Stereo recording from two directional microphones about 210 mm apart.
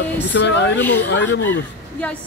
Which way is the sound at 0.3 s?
55° left (ahead or behind).